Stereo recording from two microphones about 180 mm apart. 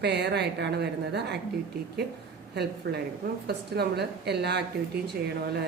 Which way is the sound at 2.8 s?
75° right (ahead or behind).